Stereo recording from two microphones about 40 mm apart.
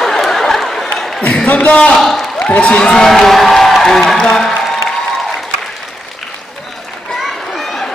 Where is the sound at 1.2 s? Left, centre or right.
Left.